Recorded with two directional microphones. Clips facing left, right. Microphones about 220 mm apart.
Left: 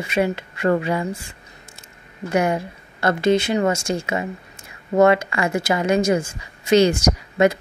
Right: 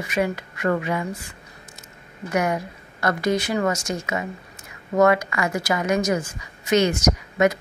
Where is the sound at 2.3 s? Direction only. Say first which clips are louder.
Left 3 dB; 30° left (ahead or behind).